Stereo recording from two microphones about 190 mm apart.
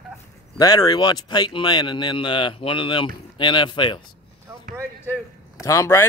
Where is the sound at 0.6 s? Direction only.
20° left (ahead or behind).